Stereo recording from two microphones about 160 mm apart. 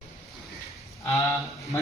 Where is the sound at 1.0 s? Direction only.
20° left (ahead or behind).